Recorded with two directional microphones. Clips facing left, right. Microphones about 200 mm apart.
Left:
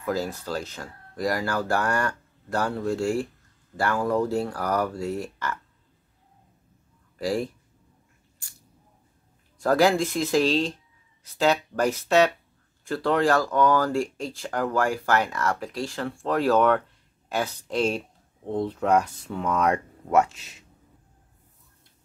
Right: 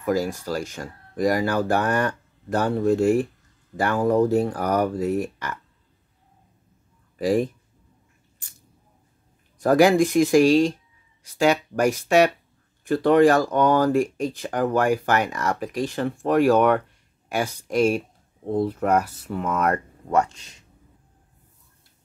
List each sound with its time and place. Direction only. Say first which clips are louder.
0.0 s speech: right 4 dB; 15° right (ahead or behind)
7.2 s speech: right 5 dB; 20° right (ahead or behind)
9.6 s speech: right 4 dB; 15° right (ahead or behind); by 20.5 s 5° left (ahead or behind)